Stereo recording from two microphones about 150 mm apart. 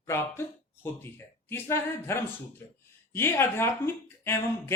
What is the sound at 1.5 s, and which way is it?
A man's voice, 15° left (ahead or behind).